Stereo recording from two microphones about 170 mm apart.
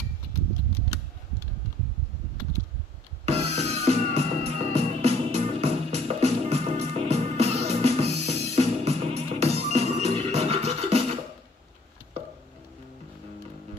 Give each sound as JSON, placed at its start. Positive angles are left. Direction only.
{"t": 3.3, "sound": "music", "side_deg": -35}